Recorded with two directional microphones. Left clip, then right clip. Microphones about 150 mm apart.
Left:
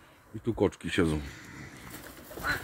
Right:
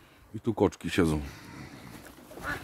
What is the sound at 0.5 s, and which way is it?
Speech, 40° right (ahead or behind).